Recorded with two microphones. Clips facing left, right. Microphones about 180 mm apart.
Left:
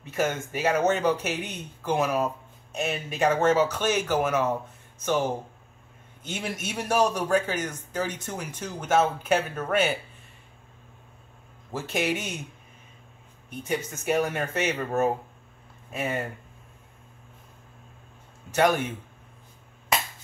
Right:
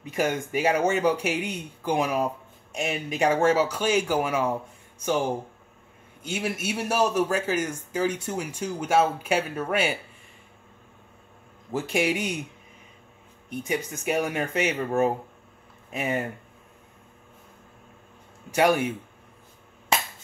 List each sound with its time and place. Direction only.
0.0 s a man's voice: 15° right (ahead or behind)
6.2 s a man's voice: 10° right (ahead or behind)
11.7 s a man's voice: 10° right (ahead or behind)
13.7 s a man's voice: 15° right (ahead or behind)
18.5 s a man's voice: 10° right (ahead or behind)